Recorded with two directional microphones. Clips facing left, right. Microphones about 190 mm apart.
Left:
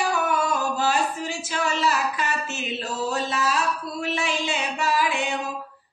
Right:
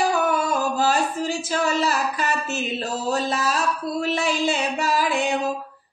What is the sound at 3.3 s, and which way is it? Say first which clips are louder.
Child singing: right 1 dB; 40° right (ahead or behind).